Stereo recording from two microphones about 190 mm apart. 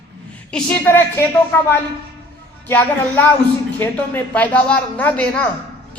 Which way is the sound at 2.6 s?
10° left (ahead or behind).